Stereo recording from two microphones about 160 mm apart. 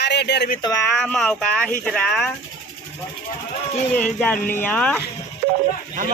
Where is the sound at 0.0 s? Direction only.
90° left.